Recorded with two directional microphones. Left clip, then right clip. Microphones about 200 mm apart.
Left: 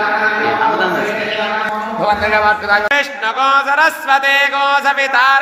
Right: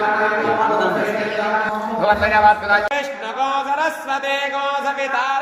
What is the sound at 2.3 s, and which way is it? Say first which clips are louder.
Speech: even; 35° left (ahead or behind).